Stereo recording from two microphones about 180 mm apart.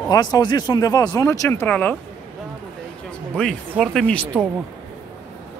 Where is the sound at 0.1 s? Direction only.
20° left (ahead or behind).